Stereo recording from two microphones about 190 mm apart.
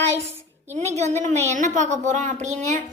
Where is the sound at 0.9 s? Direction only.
35° right (ahead or behind).